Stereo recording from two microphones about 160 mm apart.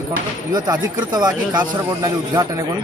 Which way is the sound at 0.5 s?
25° right (ahead or behind).